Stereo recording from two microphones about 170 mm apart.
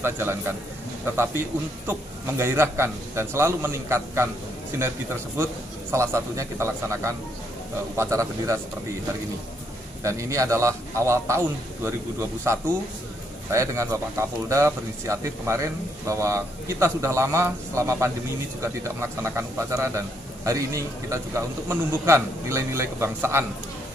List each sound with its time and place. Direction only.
0.0 s speech: 15° right (ahead or behind)
10.0 s speech: 20° right (ahead or behind)